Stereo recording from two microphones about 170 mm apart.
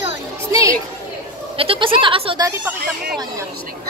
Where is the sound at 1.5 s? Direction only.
35° right (ahead or behind).